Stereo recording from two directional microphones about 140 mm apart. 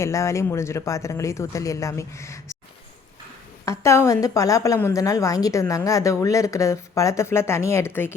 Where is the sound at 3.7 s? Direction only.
20° left (ahead or behind).